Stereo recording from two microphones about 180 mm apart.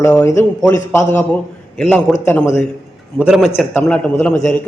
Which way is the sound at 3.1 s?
5° right (ahead or behind).